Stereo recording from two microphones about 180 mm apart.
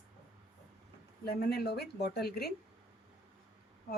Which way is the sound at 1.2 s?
60° left (ahead or behind).